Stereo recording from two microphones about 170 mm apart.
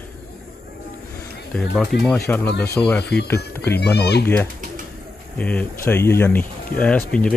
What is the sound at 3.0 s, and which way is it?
Speech, 75° left (ahead or behind).